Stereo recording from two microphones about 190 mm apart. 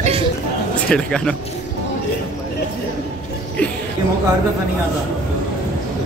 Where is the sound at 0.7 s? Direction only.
5° left (ahead or behind).